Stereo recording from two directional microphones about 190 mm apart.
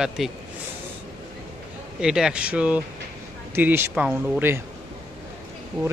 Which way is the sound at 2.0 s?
5° right (ahead or behind).